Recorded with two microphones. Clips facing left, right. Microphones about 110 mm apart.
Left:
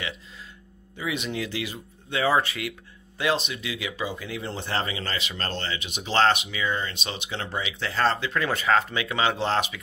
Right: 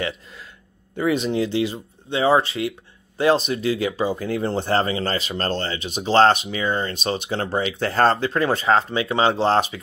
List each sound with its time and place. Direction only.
1.1 s speech: 30° right (ahead or behind)
3.2 s speech: 35° right (ahead or behind)